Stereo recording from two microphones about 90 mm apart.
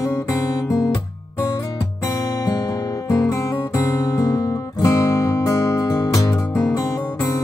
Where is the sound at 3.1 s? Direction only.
40° left (ahead or behind).